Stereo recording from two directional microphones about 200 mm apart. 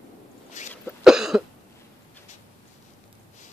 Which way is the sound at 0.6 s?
35° left (ahead or behind).